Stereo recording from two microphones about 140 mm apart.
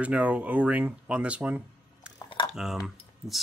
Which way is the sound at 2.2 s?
35° left (ahead or behind).